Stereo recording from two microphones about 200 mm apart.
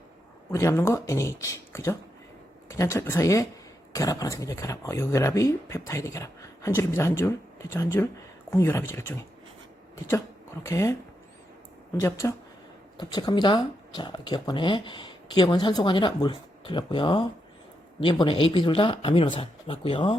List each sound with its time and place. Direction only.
0.5 s speech: 15° left (ahead or behind)
10.7 s speech: 15° left (ahead or behind)
11.9 s speech: 15° left (ahead or behind)